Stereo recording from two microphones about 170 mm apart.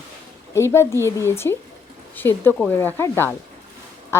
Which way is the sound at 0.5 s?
15° left (ahead or behind).